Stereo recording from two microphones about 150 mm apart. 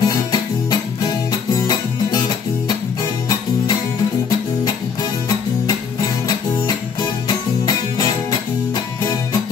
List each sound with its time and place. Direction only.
0.0 s music: 25° left (ahead or behind)